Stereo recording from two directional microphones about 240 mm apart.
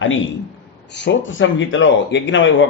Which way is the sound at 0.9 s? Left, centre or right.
Left.